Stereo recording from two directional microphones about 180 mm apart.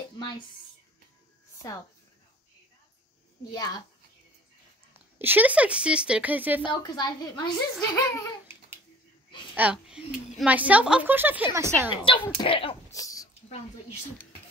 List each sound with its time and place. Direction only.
4.9 s a child's voice: 10° right (ahead or behind)
6.6 s a woman's voice: 25° left (ahead or behind)
9.6 s a child's voice: 5° right (ahead or behind)
11.9 s a woman's voice: 30° left (ahead or behind)
12.9 s a sound: 20° left (ahead or behind)